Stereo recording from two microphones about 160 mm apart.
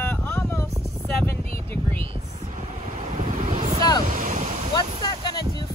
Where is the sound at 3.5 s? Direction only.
40° right (ahead or behind).